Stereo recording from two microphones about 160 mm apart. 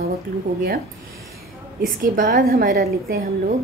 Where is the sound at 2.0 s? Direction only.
70° right (ahead or behind).